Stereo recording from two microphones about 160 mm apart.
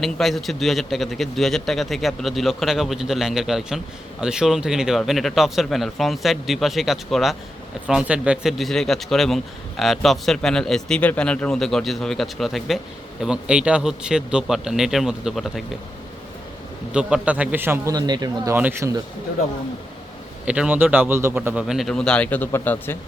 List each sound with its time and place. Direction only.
0.0 s speech: centre (ahead or behind)
16.9 s a man's voice: 5° right (ahead or behind)
17.9 s speech: 25° right (ahead or behind)
18.5 s a man's voice: 15° right (ahead or behind)
20.4 s a man's voice: 5° right (ahead or behind); by 23.0 s 10° left (ahead or behind)